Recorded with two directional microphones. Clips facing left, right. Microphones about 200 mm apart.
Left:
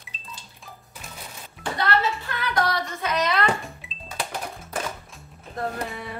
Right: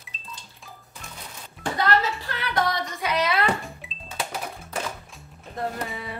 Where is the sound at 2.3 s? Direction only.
30° right (ahead or behind).